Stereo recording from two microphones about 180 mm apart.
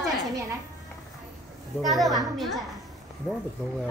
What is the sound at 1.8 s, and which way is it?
A woman's voice, centre (ahead or behind).